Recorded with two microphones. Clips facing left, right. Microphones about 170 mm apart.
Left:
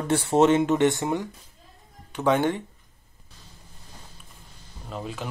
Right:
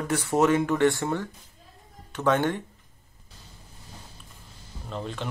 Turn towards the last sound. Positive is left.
turn(degrees=5)  # may be behind; listen again after turning